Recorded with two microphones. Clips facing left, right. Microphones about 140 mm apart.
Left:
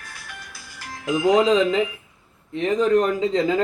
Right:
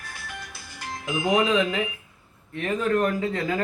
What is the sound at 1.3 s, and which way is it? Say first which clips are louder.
Speech: left 3 dB; 25° left (ahead or behind).